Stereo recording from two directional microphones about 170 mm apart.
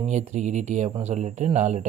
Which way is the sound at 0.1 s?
45° right (ahead or behind).